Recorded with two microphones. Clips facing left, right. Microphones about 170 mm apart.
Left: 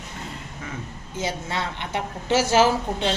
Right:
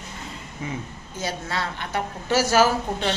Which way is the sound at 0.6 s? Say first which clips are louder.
Right 5 dB; 15° right (ahead or behind).